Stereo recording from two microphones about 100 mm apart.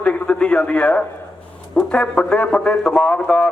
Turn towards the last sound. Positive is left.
turn(degrees=10)  # may be behind; listen again after turning